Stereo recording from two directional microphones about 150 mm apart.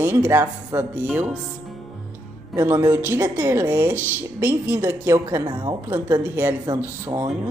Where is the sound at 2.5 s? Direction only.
20° right (ahead or behind).